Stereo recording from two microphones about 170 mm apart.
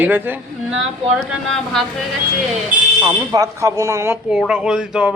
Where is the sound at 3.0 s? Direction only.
20° right (ahead or behind).